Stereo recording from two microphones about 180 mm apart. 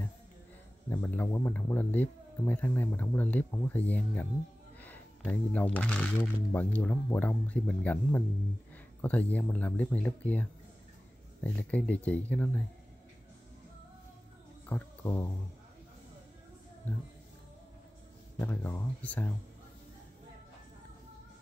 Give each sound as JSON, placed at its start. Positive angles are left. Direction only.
{"t": 0.8, "sound": "speech", "side_deg": 15}
{"t": 11.4, "sound": "speech", "side_deg": 10}
{"t": 14.7, "sound": "speech", "side_deg": 15}
{"t": 18.4, "sound": "speech", "side_deg": 15}